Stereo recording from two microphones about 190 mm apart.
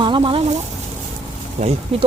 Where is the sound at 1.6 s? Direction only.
40° right (ahead or behind).